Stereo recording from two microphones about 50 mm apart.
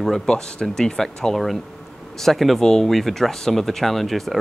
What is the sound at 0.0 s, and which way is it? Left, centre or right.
Speech, centre.